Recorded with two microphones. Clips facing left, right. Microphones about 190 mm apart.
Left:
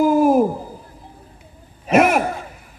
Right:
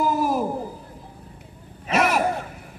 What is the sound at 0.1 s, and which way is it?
Hoot, 50° left (ahead or behind).